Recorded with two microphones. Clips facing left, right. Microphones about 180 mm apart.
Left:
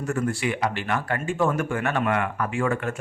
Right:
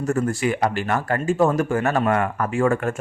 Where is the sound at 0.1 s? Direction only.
40° right (ahead or behind).